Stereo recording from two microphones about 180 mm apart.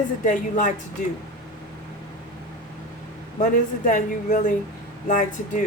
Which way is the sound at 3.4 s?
45° left (ahead or behind).